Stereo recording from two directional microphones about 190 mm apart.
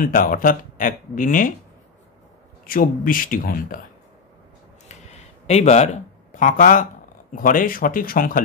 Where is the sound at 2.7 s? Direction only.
45° left (ahead or behind).